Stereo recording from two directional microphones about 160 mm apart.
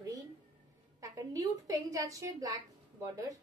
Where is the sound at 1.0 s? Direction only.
20° right (ahead or behind).